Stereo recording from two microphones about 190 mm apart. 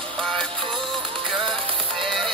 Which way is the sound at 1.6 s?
30° right (ahead or behind).